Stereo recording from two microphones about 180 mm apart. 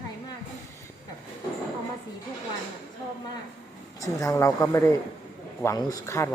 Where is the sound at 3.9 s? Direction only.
20° left (ahead or behind).